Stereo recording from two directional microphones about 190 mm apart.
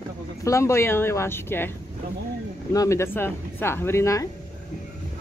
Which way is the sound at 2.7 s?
15° left (ahead or behind).